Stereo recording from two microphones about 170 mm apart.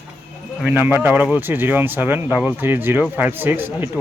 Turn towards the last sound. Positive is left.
turn(degrees=-10)  # may be behind; listen again after turning